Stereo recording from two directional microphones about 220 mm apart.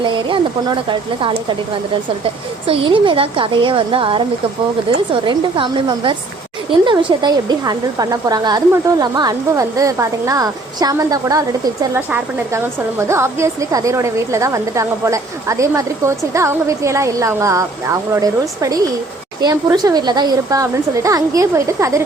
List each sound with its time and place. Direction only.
0.0 s a woman's voice: 20° right (ahead or behind)
2.9 s a woman's voice: 20° right (ahead or behind)